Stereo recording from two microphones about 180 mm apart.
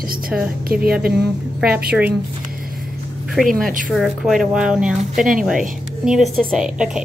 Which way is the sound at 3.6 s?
50° right (ahead or behind).